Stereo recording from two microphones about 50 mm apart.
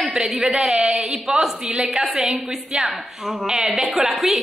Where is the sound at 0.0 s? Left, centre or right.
Centre.